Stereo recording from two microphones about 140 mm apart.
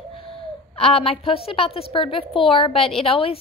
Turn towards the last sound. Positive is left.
turn(degrees=40)  # may be behind; listen again after turning